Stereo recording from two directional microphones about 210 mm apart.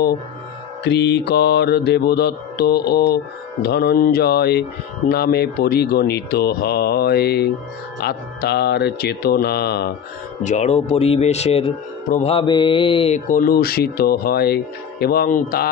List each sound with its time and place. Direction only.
0.8 s speech: 55° left (ahead or behind)
10.4 s speech: 35° left (ahead or behind)